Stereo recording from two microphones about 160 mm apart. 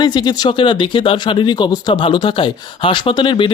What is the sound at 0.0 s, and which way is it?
Speech, 25° left (ahead or behind).